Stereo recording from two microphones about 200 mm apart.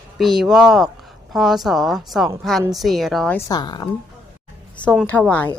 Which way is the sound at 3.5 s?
20° left (ahead or behind).